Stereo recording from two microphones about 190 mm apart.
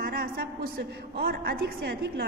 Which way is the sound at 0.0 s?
50° right (ahead or behind).